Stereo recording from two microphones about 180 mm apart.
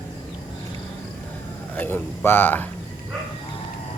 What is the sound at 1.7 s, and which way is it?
Speech, 10° left (ahead or behind).